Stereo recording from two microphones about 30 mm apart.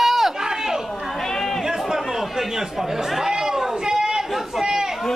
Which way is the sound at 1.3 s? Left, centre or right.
Centre.